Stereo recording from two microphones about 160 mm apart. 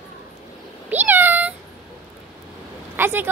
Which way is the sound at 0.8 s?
10° right (ahead or behind).